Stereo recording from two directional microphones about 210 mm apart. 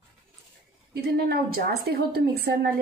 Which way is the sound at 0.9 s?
50° right (ahead or behind).